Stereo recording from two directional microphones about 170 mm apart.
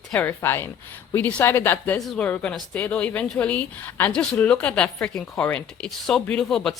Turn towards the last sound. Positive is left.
turn(degrees=5)  # may be behind; listen again after turning